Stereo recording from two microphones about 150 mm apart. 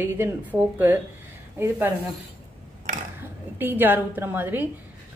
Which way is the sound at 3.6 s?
15° right (ahead or behind).